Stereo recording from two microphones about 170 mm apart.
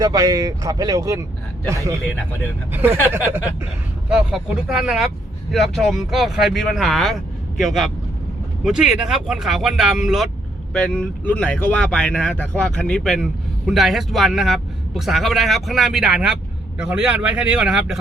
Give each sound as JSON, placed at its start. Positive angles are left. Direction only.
{"t": 0.0, "sound": "a man's voice", "side_deg": -20}
{"t": 3.1, "sound": "a man's voice", "side_deg": -15}